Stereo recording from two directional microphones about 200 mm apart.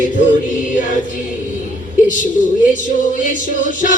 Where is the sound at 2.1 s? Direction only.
40° left (ahead or behind).